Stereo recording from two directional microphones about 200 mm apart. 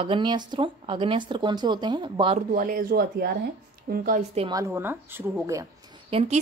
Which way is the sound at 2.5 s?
45° right (ahead or behind).